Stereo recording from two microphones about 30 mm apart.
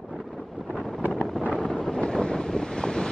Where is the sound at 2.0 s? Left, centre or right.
Left.